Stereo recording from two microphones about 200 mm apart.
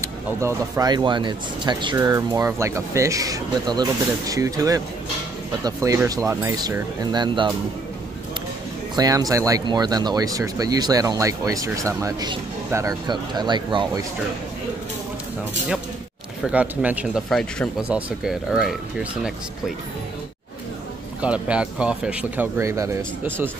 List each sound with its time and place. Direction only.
0.0 s speech: 15° right (ahead or behind)
8.9 s speech: 20° right (ahead or behind)
16.4 s speech: 5° right (ahead or behind)
21.2 s speech: 5° right (ahead or behind)